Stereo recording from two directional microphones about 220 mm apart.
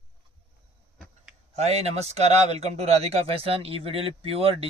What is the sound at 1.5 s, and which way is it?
Speech, 30° right (ahead or behind).